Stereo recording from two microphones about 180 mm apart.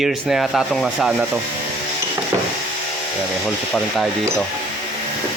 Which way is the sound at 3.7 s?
Centre (ahead or behind).